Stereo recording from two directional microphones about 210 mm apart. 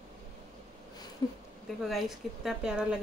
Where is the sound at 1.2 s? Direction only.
20° left (ahead or behind).